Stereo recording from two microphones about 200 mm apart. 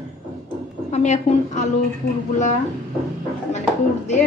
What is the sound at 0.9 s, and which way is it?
Speech, 35° left (ahead or behind).